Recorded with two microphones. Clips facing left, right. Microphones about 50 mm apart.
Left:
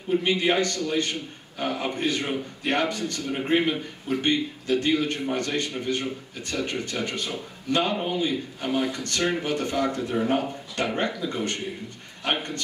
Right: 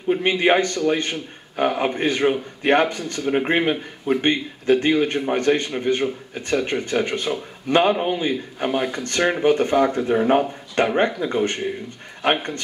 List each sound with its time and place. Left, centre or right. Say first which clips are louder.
0.1 s speech: right 5 dB; right
10.1 s speech: right 7 dB; right
10.8 s speech: right 8 dB; right